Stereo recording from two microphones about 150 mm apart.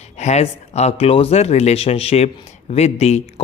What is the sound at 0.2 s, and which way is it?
Speech, 50° left (ahead or behind).